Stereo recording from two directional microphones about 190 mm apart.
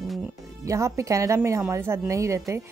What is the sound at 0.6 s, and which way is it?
Speech, 15° right (ahead or behind).